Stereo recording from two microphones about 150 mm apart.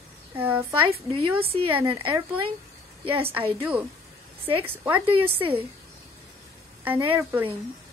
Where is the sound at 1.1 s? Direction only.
35° right (ahead or behind).